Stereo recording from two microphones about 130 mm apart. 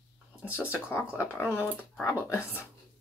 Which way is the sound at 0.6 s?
15° left (ahead or behind).